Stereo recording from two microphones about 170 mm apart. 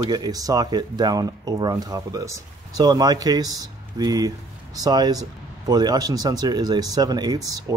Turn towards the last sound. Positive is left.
turn(degrees=-20)  # may be behind; listen again after turning